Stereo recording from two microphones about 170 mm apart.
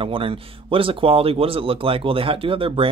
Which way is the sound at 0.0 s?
30° right (ahead or behind).